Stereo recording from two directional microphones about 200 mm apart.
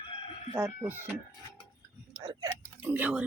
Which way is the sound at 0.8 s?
10° right (ahead or behind).